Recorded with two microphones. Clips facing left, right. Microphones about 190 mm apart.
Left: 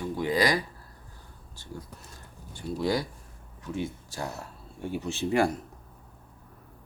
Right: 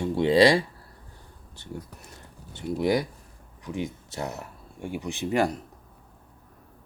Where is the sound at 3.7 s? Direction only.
15° right (ahead or behind).